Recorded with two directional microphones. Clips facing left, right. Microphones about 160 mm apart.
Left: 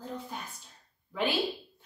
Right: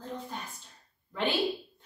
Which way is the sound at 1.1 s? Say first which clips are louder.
Even; 10° left (ahead or behind).